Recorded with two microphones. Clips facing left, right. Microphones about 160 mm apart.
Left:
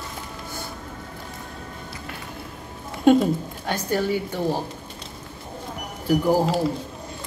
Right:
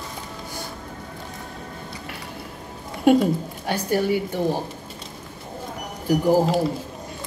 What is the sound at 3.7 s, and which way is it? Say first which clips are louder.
Speech: right 2 dB; 10° right (ahead or behind).